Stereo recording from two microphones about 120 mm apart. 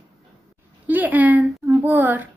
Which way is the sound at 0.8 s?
15° right (ahead or behind).